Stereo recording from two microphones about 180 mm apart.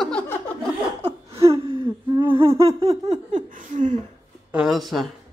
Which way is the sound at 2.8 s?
35° right (ahead or behind).